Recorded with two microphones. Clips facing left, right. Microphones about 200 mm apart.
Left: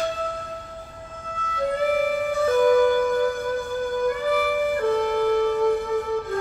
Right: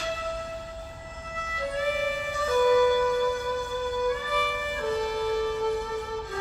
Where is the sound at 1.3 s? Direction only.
55° left (ahead or behind).